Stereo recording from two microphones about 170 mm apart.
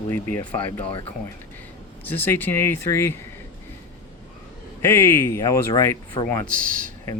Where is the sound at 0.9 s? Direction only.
35° left (ahead or behind).